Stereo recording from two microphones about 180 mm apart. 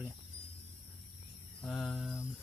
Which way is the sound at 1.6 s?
5° left (ahead or behind).